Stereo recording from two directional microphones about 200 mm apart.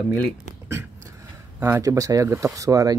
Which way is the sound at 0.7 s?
15° right (ahead or behind).